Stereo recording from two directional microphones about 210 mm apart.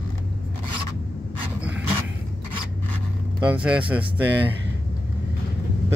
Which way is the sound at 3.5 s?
5° right (ahead or behind).